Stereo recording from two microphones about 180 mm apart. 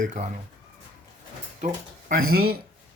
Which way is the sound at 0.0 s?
45° right (ahead or behind).